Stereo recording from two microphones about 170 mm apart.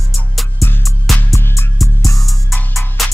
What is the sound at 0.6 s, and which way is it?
Music, 15° left (ahead or behind).